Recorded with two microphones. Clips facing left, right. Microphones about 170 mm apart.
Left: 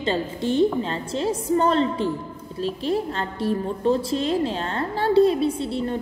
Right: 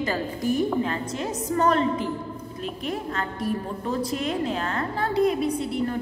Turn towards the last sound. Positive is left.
turn(degrees=30)  # may be behind; listen again after turning